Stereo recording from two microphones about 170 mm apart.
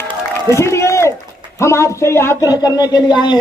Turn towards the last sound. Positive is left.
turn(degrees=25)  # may be behind; listen again after turning